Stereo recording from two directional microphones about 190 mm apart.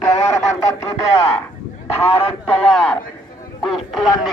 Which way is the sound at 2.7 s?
5° left (ahead or behind).